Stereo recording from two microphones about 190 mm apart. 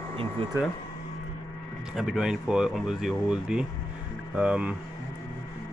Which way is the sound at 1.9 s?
Centre (ahead or behind).